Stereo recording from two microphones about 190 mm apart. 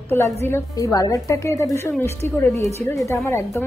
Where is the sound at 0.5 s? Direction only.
15° left (ahead or behind).